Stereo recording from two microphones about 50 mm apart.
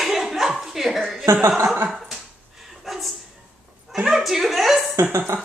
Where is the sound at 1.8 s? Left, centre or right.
Centre.